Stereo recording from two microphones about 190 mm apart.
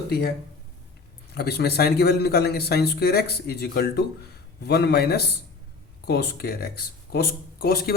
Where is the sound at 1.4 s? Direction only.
60° left (ahead or behind).